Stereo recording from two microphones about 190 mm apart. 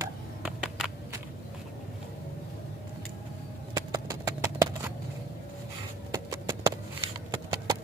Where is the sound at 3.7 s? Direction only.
20° right (ahead or behind).